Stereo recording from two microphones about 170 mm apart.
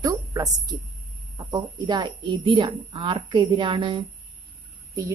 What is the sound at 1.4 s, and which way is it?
A woman's voice, 25° right (ahead or behind).